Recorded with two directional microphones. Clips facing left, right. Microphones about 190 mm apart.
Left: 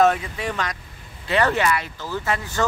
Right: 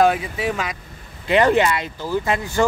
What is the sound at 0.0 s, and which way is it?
Speech, 5° right (ahead or behind).